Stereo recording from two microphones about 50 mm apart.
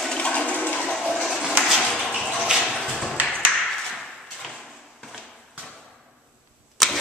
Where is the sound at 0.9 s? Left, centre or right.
Centre.